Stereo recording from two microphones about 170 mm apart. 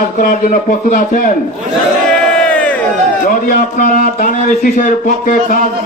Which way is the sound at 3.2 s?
55° left (ahead or behind).